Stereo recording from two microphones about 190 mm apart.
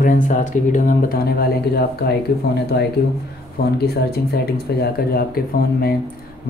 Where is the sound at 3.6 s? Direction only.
55° left (ahead or behind).